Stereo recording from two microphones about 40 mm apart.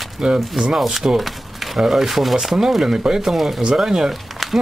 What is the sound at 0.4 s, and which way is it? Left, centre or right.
Speech, centre.